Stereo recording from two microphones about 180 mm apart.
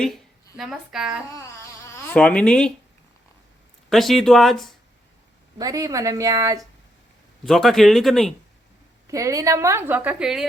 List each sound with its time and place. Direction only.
0.0 s a woman's voice: centre (ahead or behind)
1.3 s a sound: 15° left (ahead or behind)
2.1 s speech: 5° left (ahead or behind)
3.8 s speech: centre (ahead or behind)
5.5 s speech: 20° right (ahead or behind)
7.4 s speech: centre (ahead or behind)
9.0 s a woman's voice: 15° right (ahead or behind)